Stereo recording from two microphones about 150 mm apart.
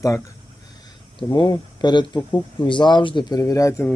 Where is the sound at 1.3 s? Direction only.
25° left (ahead or behind).